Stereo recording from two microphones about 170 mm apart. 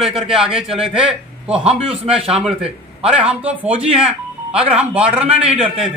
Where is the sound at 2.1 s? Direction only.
35° right (ahead or behind).